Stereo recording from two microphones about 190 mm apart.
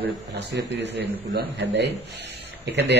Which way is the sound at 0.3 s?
65° right (ahead or behind).